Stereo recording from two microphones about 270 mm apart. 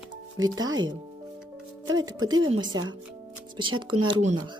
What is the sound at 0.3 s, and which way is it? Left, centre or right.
Speech, centre.